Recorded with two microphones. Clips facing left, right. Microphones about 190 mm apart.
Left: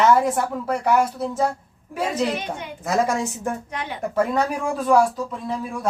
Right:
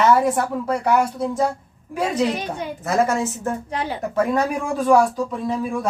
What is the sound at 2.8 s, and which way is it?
Speech, 15° left (ahead or behind).